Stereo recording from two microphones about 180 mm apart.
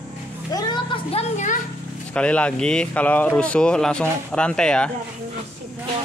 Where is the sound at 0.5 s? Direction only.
25° left (ahead or behind); by 1.5 s 40° left (ahead or behind).